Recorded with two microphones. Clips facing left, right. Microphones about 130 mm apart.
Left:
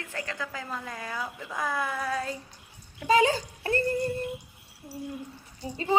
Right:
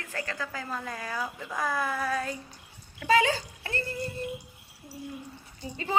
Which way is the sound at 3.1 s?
40° left (ahead or behind).